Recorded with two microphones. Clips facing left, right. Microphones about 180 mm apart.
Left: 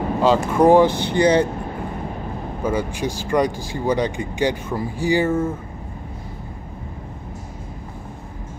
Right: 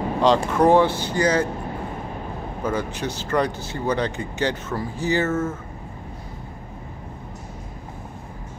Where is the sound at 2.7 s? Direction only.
10° left (ahead or behind).